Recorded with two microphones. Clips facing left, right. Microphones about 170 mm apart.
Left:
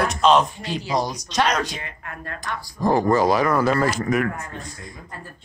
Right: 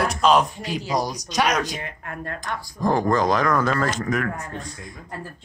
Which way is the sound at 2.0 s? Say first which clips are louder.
Right 2 dB; 45° right (ahead or behind).